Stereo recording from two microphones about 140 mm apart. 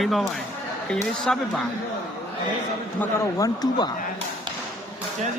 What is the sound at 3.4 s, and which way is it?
Speech, 30° left (ahead or behind).